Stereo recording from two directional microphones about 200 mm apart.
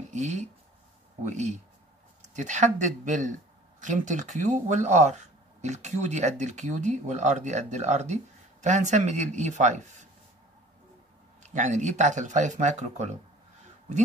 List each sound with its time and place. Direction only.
0.1 s speech: 35° right (ahead or behind)
11.5 s speech: 35° right (ahead or behind)